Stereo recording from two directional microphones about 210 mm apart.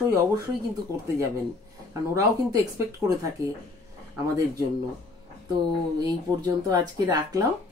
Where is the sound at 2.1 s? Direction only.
15° right (ahead or behind).